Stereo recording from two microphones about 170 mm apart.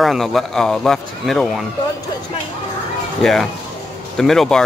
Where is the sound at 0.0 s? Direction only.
Centre (ahead or behind).